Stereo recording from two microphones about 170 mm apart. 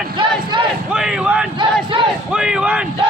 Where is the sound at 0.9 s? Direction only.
5° right (ahead or behind).